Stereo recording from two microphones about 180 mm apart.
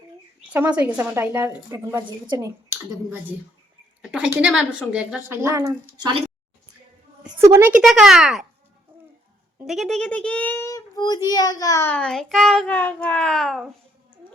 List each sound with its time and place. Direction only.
0.5 s a woman's voice: 10° right (ahead or behind)
2.0 s a woman's voice: 25° right (ahead or behind)
4.4 s a woman's voice: 5° right (ahead or behind); by 6.2 s 25° right (ahead or behind)
7.3 s speech: 15° right (ahead or behind)
9.6 s a child's voice: centre (ahead or behind)